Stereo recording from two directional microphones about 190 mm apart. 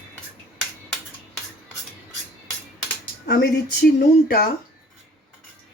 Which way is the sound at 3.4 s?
55° left (ahead or behind).